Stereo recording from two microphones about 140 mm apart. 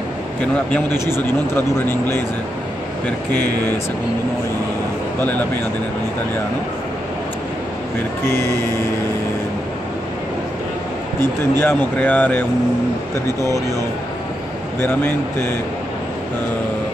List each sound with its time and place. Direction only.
1.5 s speech: 15° left (ahead or behind)
3.4 s speech: 25° right (ahead or behind)
5.2 s speech: 10° left (ahead or behind)
11.6 s speech: 10° left (ahead or behind)
13.4 s speech: 25° right (ahead or behind)
14.8 s speech: 15° left (ahead or behind)